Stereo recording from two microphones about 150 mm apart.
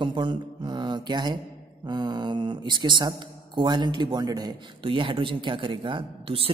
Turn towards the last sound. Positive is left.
turn(degrees=-40)  # may be behind; listen again after turning